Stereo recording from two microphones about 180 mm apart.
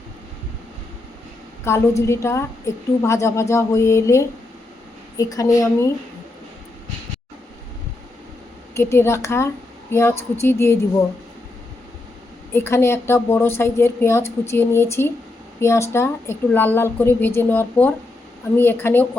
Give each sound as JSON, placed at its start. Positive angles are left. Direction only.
{"t": 1.6, "sound": "a woman's voice", "side_deg": 15}
{"t": 8.7, "sound": "a woman's voice", "side_deg": 15}
{"t": 12.5, "sound": "a woman's voice", "side_deg": 15}